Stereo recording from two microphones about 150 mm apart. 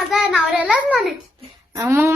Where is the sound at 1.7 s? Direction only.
20° right (ahead or behind).